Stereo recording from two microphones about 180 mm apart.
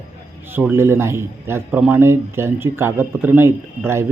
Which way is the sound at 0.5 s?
10° right (ahead or behind).